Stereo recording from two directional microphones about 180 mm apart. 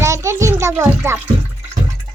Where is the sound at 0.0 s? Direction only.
15° right (ahead or behind).